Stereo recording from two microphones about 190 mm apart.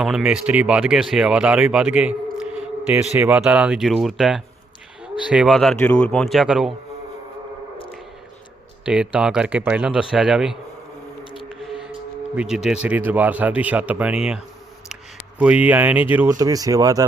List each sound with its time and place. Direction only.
0.0 s speech: 5° right (ahead or behind)
8.8 s speech: 5° right (ahead or behind)
11.3 s music: centre (ahead or behind)
12.4 s speech: 5° right (ahead or behind); by 17.0 s 20° right (ahead or behind)